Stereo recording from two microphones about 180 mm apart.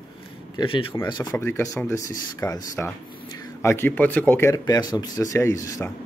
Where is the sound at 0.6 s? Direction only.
25° left (ahead or behind).